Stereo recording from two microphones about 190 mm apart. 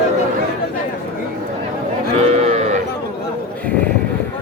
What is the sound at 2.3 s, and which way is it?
Livestock, 35° right (ahead or behind).